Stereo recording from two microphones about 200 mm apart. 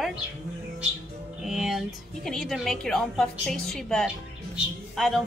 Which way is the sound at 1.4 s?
5° right (ahead or behind).